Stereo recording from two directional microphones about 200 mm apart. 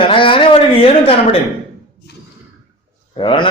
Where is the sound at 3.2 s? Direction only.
25° left (ahead or behind).